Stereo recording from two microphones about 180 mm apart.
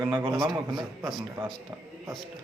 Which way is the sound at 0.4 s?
20° right (ahead or behind).